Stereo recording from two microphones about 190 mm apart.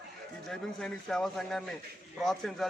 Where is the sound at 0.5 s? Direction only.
5° left (ahead or behind).